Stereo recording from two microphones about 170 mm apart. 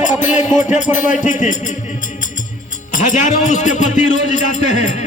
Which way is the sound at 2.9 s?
45° left (ahead or behind).